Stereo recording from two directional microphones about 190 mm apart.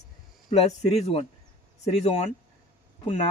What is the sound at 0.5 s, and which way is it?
Speech, 35° left (ahead or behind).